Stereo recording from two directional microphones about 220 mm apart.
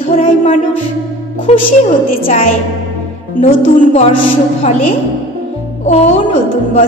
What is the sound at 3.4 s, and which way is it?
A woman's voice, 30° left (ahead or behind).